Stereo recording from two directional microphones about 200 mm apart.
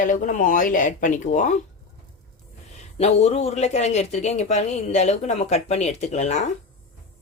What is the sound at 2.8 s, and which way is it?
Speech, 30° left (ahead or behind).